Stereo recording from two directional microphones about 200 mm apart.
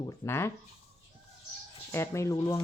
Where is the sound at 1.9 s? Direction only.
15° left (ahead or behind).